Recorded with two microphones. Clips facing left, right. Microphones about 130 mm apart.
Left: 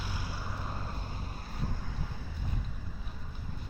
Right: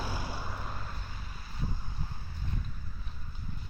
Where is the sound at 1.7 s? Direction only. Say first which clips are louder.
Left 2 dB; 85° left.